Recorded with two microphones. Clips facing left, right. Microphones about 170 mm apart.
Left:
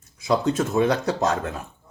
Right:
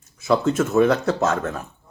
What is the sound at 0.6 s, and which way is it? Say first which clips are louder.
Speech: right 3 dB; 35° left (ahead or behind).